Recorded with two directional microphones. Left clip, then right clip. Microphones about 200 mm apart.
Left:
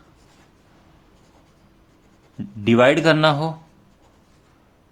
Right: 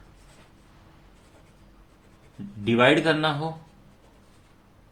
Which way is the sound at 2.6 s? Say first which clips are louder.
Left 5 dB; 45° left (ahead or behind).